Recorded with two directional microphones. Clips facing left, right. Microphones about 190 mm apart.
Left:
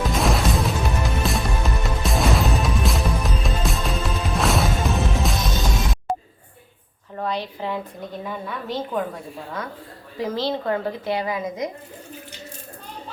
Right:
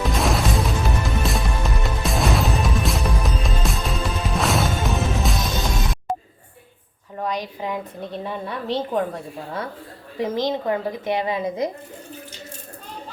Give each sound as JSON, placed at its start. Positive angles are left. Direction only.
{"t": 0.0, "sound": "music", "side_deg": 0}
{"t": 7.2, "sound": "a woman's voice", "side_deg": -15}
{"t": 8.2, "sound": "a woman's voice", "side_deg": -30}
{"t": 10.2, "sound": "a woman's voice", "side_deg": -20}